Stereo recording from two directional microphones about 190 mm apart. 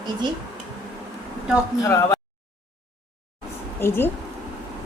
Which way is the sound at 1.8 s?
15° left (ahead or behind).